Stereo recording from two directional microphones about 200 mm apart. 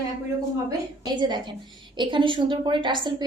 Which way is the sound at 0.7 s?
20° right (ahead or behind).